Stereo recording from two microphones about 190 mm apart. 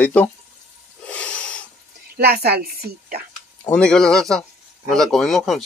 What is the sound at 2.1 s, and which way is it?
A woman's voice, 55° right (ahead or behind).